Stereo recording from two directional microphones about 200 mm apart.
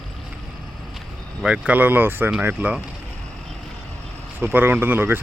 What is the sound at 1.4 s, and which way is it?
Speech, 5° right (ahead or behind).